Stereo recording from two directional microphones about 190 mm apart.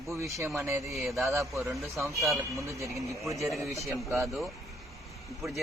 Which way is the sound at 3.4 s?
Centre (ahead or behind).